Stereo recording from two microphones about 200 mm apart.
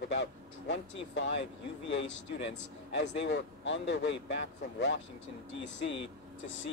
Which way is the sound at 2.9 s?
60° left (ahead or behind).